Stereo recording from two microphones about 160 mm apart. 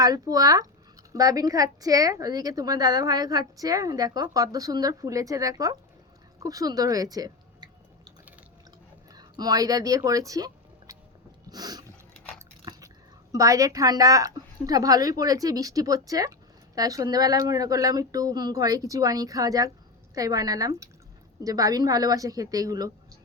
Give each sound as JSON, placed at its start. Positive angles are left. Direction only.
{"t": 0.0, "sound": "a woman's voice", "side_deg": -20}
{"t": 9.1, "sound": "speech", "side_deg": -25}
{"t": 11.4, "sound": "a sound", "side_deg": -25}
{"t": 13.3, "sound": "a woman's voice", "side_deg": -20}